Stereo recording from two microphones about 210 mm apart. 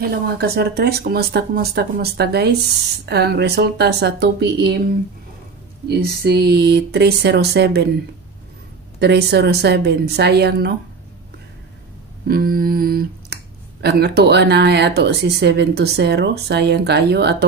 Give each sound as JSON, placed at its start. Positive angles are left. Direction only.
{"t": 0.0, "sound": "speech", "side_deg": -45}
{"t": 5.9, "sound": "speech", "side_deg": -50}
{"t": 9.0, "sound": "speech", "side_deg": -50}
{"t": 12.3, "sound": "speech", "side_deg": -45}